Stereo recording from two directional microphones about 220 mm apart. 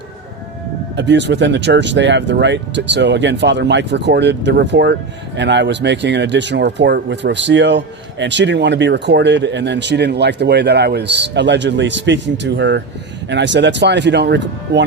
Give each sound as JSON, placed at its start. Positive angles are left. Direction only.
{"t": 0.9, "sound": "speech", "side_deg": -55}